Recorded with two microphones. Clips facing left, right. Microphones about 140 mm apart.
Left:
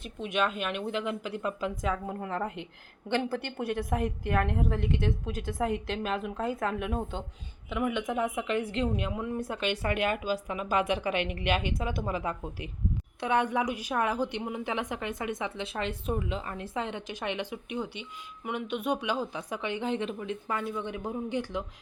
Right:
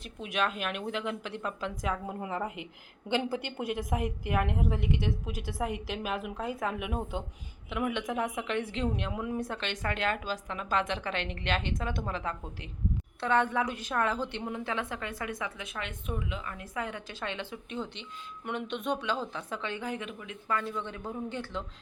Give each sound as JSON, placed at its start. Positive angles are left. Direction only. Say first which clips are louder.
{"t": 0.2, "sound": "a woman's voice", "louder": "left 2 dB", "side_deg": 0}
{"t": 20.5, "sound": "a woman's voice", "louder": "right 2 dB", "side_deg": 15}